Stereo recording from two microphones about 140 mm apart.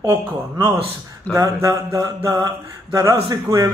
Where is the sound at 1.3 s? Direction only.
25° right (ahead or behind).